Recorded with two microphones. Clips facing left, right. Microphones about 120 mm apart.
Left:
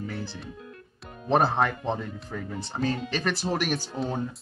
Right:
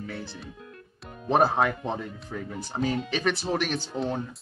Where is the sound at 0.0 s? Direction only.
Centre (ahead or behind).